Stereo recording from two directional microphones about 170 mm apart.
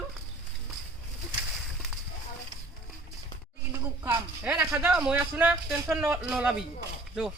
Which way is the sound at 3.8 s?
10° right (ahead or behind).